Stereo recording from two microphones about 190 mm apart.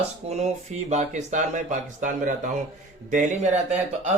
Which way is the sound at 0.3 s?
35° right (ahead or behind).